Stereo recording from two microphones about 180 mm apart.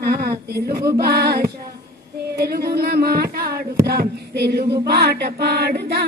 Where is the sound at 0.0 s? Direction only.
60° right (ahead or behind).